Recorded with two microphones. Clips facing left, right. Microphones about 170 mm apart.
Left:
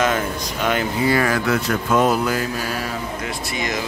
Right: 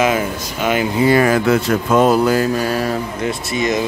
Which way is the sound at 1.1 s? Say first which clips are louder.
Right 7 dB; 25° right (ahead or behind).